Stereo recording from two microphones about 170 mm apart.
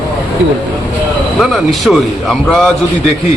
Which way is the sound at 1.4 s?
Centre (ahead or behind).